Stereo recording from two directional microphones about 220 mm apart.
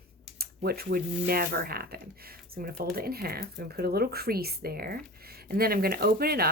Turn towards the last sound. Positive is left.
turn(degrees=-45)  # may be behind; listen again after turning